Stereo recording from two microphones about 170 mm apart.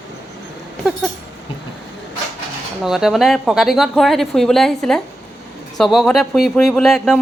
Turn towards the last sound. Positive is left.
turn(degrees=0)  # may be behind; listen again after turning